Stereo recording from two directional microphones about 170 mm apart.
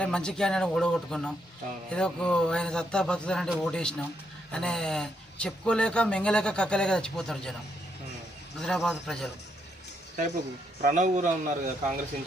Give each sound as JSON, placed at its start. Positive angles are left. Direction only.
{"t": 0.0, "sound": "speech", "side_deg": 5}
{"t": 8.5, "sound": "speech", "side_deg": 0}
{"t": 10.8, "sound": "a man's voice", "side_deg": -50}